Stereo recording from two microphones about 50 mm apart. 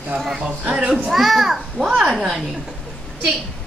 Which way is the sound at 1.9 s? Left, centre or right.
Centre.